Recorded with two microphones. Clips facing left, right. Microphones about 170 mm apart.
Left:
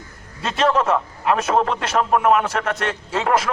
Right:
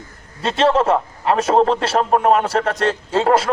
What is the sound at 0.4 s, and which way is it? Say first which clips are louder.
A man's voice: right 3 dB; 30° right (ahead or behind).